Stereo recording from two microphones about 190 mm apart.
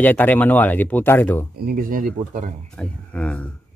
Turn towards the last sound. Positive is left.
turn(degrees=5)  # may be behind; listen again after turning